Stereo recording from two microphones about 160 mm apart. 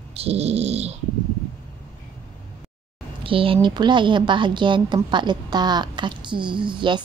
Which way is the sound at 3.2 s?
35° right (ahead or behind).